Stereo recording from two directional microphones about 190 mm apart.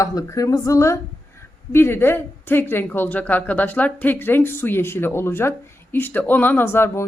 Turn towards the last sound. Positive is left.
turn(degrees=15)  # may be behind; listen again after turning